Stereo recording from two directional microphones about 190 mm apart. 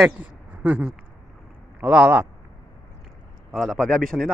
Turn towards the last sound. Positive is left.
turn(degrees=5)  # may be behind; listen again after turning